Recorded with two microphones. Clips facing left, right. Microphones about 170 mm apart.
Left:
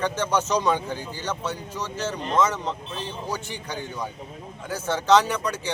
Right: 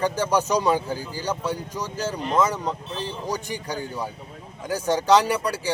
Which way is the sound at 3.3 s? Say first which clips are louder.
Right 3 dB; 40° right (ahead or behind).